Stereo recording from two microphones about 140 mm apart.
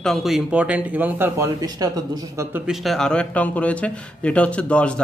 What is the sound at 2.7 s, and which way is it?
Speech, centre (ahead or behind).